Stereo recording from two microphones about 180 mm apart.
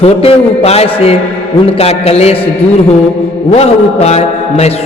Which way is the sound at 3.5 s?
35° left (ahead or behind).